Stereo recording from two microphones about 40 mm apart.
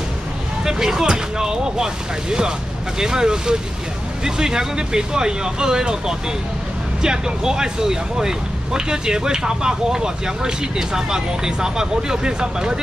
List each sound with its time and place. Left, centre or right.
0.7 s speech: centre